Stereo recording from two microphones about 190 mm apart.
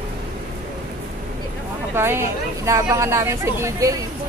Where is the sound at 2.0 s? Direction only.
15° right (ahead or behind).